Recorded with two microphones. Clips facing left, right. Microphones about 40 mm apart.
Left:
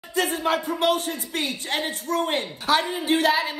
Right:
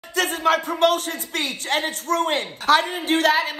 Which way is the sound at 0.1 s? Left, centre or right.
Right.